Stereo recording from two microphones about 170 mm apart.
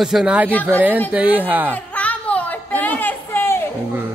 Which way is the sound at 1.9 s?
10° left (ahead or behind).